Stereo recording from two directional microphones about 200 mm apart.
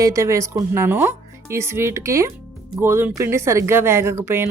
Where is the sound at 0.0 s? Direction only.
15° right (ahead or behind).